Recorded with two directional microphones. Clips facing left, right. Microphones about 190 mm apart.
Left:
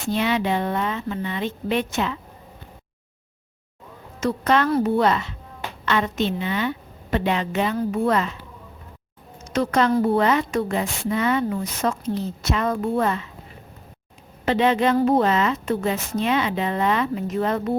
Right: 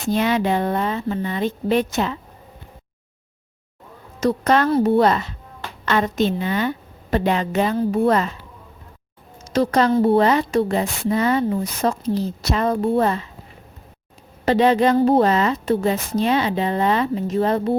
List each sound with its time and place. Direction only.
0.1 s a woman's voice: 45° right (ahead or behind)
4.2 s a woman's voice: 40° right (ahead or behind)
9.4 s a woman's voice: 35° right (ahead or behind)
14.4 s a woman's voice: 40° right (ahead or behind)